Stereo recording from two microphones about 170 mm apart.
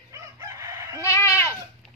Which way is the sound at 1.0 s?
15° left (ahead or behind).